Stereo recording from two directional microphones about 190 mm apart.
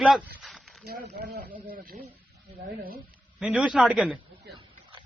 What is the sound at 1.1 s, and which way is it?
Speech, 55° right (ahead or behind).